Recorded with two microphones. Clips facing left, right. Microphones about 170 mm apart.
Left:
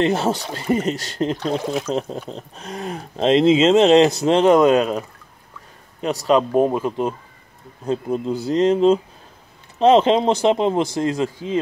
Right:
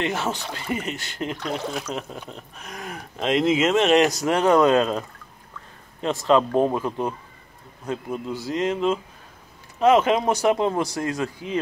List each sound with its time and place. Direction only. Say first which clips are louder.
0.0 s speech: left 7 dB; 35° left (ahead or behind); by 5.0 s 15° left (ahead or behind)
6.2 s speech: left 2 dB; 15° left (ahead or behind)
7.8 s speech: left 6 dB; 30° left (ahead or behind)